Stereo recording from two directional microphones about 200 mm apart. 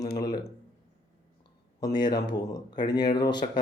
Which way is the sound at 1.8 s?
20° left (ahead or behind).